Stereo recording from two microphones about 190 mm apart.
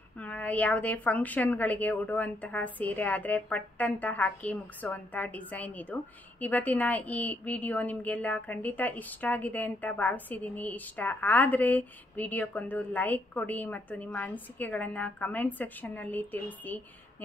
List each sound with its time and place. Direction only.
0.2 s a woman's voice: 10° left (ahead or behind)